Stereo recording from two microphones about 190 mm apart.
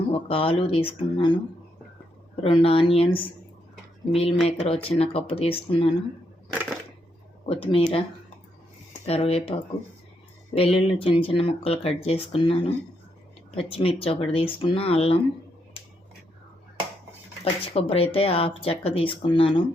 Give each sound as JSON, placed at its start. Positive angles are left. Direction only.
{"t": 0.1, "sound": "speech", "side_deg": 30}
{"t": 6.5, "sound": "a sound", "side_deg": 0}
{"t": 7.4, "sound": "speech", "side_deg": 30}
{"t": 9.0, "sound": "speech", "side_deg": 30}
{"t": 17.4, "sound": "speech", "side_deg": 30}